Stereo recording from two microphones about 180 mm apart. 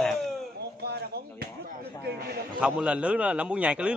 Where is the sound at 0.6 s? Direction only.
65° right (ahead or behind).